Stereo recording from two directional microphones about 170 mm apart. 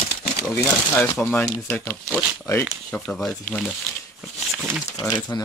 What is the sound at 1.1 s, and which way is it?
Speech, 10° left (ahead or behind).